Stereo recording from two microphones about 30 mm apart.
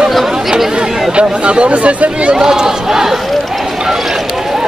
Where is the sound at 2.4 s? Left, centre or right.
Right.